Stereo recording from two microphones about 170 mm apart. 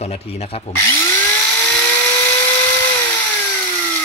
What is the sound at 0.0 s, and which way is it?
Speech, 40° left (ahead or behind).